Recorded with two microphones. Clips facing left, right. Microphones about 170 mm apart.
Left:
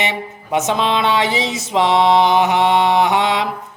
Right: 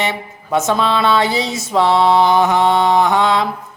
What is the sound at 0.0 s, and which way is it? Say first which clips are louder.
Speech: right 1 dB; 15° left (ahead or behind).